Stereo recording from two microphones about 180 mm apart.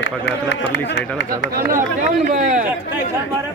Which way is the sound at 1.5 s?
55° right (ahead or behind).